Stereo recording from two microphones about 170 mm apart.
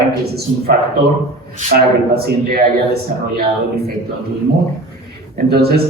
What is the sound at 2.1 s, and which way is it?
Speech, 65° right (ahead or behind).